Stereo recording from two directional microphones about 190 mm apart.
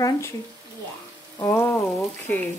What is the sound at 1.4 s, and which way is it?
Speech, 15° left (ahead or behind).